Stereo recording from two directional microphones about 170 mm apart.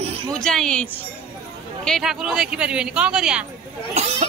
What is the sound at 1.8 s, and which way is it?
Speech, centre (ahead or behind).